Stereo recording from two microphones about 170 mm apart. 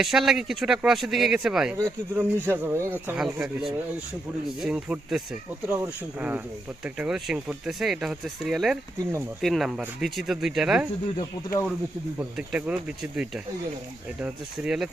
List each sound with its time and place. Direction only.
0.0 s speech: centre (ahead or behind)
11.2 s speech: 20° left (ahead or behind)
12.4 s speech: 5° right (ahead or behind)